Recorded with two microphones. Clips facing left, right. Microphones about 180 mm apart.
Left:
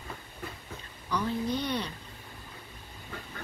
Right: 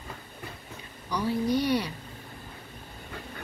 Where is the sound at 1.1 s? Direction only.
10° right (ahead or behind).